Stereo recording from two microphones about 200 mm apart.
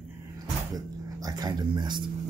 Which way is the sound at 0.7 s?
20° right (ahead or behind).